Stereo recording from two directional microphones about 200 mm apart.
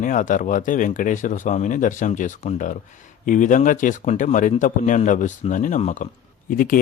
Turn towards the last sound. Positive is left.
turn(degrees=45)  # may be behind; listen again after turning